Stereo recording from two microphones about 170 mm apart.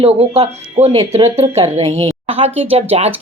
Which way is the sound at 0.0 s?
35° right (ahead or behind).